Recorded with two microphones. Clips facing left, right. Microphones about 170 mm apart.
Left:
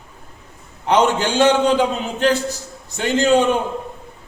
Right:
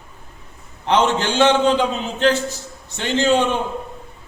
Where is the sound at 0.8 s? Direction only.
10° left (ahead or behind).